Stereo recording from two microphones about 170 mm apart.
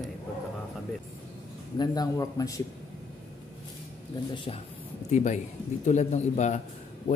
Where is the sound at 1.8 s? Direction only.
20° left (ahead or behind).